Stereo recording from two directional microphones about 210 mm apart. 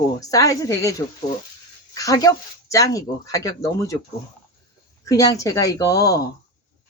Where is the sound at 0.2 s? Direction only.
15° left (ahead or behind).